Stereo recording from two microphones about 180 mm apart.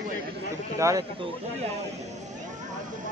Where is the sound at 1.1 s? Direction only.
30° right (ahead or behind).